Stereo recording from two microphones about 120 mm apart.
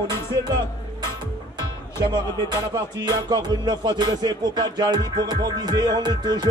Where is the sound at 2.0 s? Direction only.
35° right (ahead or behind).